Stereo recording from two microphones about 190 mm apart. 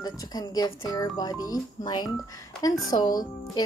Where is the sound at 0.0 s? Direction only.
20° left (ahead or behind).